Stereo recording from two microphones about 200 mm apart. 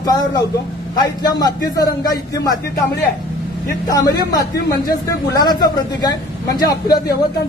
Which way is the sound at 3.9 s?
20° left (ahead or behind).